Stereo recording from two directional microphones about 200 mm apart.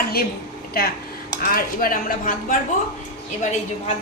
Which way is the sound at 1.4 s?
45° left (ahead or behind).